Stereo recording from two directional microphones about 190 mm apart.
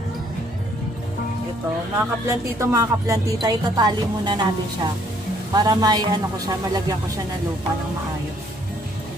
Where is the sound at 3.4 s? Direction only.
20° right (ahead or behind).